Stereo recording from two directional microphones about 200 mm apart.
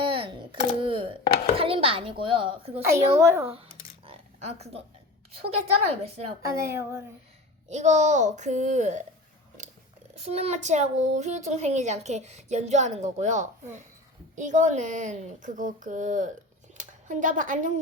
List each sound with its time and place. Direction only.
0.0 s a sound: 25° right (ahead or behind)
1.5 s a child's voice: 25° right (ahead or behind)
2.8 s a woman's voice: 15° right (ahead or behind)
4.0 s a sound: 30° right (ahead or behind)
5.4 s a child's voice: 30° right (ahead or behind)
6.4 s a woman's voice: 15° right (ahead or behind)
7.7 s a child's voice: 35° right (ahead or behind)
10.2 s a child's voice: 30° right (ahead or behind)
16.7 s a sound: 40° right (ahead or behind)